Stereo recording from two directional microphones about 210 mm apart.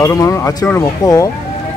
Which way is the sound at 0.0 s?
15° left (ahead or behind).